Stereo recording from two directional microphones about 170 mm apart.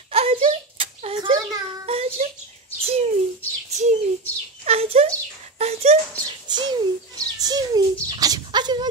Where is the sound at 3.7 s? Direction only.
45° right (ahead or behind).